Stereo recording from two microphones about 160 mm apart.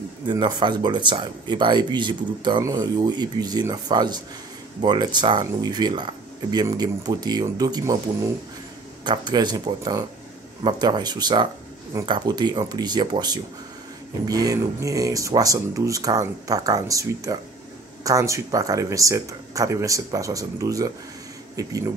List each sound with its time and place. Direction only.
0.3 s speech: 30° right (ahead or behind)